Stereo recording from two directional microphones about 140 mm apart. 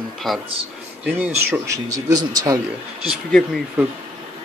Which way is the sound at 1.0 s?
10° right (ahead or behind).